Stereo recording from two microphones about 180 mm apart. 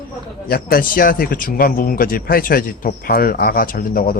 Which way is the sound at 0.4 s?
55° left (ahead or behind).